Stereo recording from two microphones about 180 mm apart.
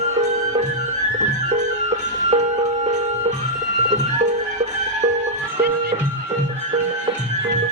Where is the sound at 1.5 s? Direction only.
40° right (ahead or behind).